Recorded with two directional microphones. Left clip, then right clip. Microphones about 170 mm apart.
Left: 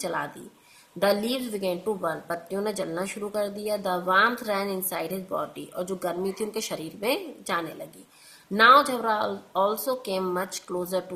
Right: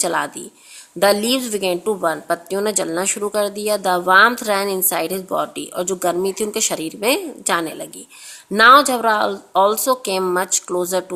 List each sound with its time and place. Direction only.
0.0 s a woman's voice: 45° right (ahead or behind)